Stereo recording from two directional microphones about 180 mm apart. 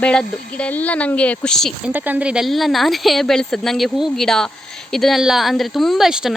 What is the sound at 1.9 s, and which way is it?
Speech, 10° right (ahead or behind).